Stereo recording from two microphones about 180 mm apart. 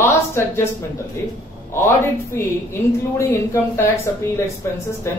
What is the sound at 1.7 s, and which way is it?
Speech, 15° left (ahead or behind).